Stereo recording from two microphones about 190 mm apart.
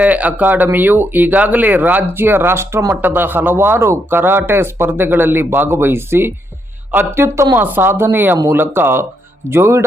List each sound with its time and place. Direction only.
0.0 s speech: 10° right (ahead or behind)